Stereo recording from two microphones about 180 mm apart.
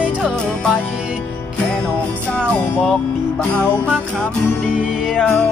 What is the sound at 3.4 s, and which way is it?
Music, 5° left (ahead or behind).